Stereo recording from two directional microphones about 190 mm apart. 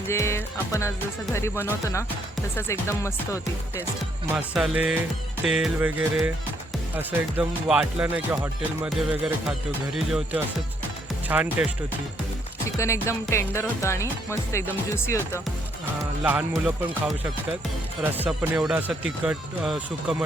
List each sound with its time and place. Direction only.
0.1 s speech: 15° left (ahead or behind)
4.3 s speech: 5° right (ahead or behind)
12.7 s speech: 15° left (ahead or behind)
16.0 s speech: 10° right (ahead or behind)